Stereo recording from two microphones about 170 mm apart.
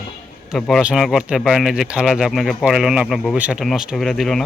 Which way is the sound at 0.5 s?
5° right (ahead or behind).